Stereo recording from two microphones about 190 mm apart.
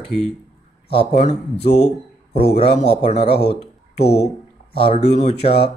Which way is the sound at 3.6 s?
35° left (ahead or behind).